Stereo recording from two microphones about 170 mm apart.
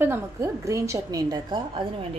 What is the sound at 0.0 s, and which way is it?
A woman's voice, 15° right (ahead or behind).